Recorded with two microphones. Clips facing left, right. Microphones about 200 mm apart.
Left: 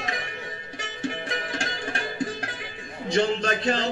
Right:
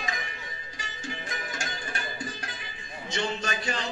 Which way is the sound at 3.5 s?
55° left (ahead or behind).